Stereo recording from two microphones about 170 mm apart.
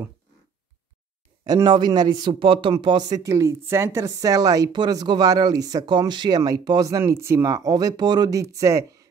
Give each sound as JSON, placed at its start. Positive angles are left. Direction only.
{"t": 1.4, "sound": "speech", "side_deg": -25}